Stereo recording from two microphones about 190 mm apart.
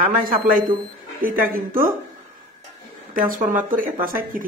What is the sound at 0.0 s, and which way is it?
A man's voice, 50° right (ahead or behind).